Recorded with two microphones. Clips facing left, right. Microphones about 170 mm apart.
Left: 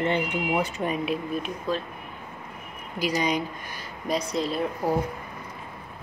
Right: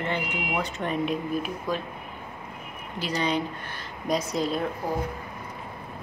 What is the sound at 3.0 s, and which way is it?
Speech, 10° left (ahead or behind).